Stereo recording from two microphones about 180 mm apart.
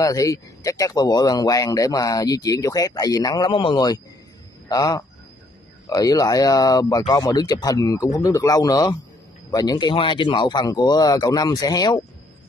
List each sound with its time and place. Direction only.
0.0 s speech: 20° left (ahead or behind)